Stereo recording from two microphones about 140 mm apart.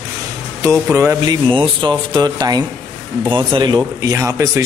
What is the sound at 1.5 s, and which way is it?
Speech, 35° right (ahead or behind).